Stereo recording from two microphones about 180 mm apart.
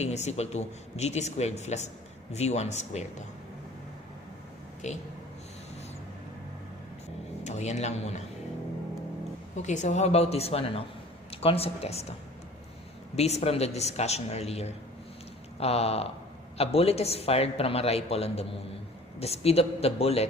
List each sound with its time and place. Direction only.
0.0 s speech: 40° left (ahead or behind)
4.8 s speech: 40° left (ahead or behind)
7.4 s speech: 40° left (ahead or behind)
9.6 s speech: 40° left (ahead or behind)
13.1 s speech: 35° left (ahead or behind)